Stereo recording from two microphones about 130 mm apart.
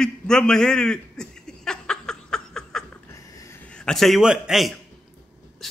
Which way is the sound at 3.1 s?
25° left (ahead or behind).